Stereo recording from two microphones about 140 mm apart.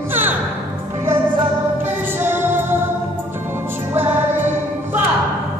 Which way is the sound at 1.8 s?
15° right (ahead or behind).